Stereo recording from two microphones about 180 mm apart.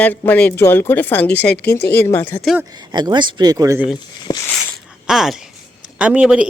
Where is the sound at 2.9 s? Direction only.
25° right (ahead or behind).